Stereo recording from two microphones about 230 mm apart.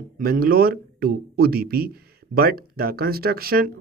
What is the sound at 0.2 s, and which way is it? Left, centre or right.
Speech, right.